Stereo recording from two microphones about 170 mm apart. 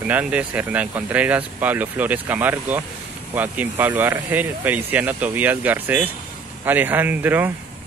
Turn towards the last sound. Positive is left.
turn(degrees=-10)  # may be behind; listen again after turning